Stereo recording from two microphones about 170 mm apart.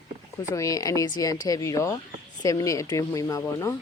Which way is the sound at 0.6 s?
20° left (ahead or behind).